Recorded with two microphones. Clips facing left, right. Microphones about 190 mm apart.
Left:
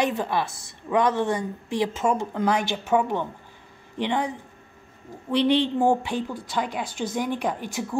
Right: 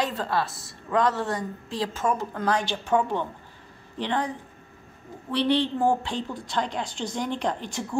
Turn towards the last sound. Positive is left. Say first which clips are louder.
# left 1 dB
turn(degrees=5)  # may be behind; listen again after turning